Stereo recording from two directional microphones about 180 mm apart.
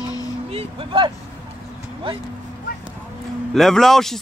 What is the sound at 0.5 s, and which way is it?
Speech, 30° right (ahead or behind).